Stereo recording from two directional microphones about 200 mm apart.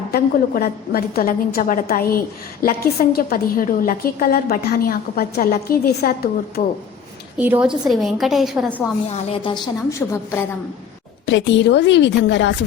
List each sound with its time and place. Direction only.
0.1 s a woman's voice: 50° left (ahead or behind)
7.3 s a woman's voice: 10° right (ahead or behind)
9.0 s a woman's voice: 30° left (ahead or behind)
10.0 s a woman's voice: 10° left (ahead or behind)
11.3 s a woman's voice: 65° left (ahead or behind)